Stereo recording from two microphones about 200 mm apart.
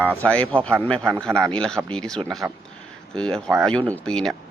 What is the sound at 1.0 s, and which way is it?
Speech, 10° right (ahead or behind).